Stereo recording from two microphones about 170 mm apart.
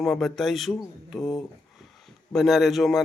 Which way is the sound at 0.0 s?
Centre (ahead or behind).